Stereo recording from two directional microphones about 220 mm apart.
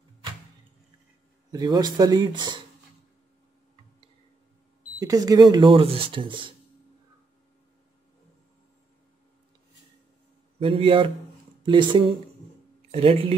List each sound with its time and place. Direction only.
1.5 s speech: 20° right (ahead or behind)
5.0 s speech: 15° right (ahead or behind)
10.6 s speech: 25° right (ahead or behind)